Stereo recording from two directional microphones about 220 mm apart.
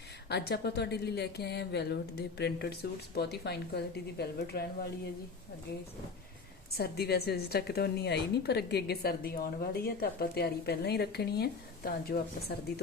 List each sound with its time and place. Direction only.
0.3 s a woman's voice: 50° left (ahead or behind)
6.7 s a woman's voice: 45° left (ahead or behind)